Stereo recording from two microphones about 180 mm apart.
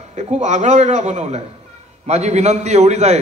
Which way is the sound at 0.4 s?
40° right (ahead or behind).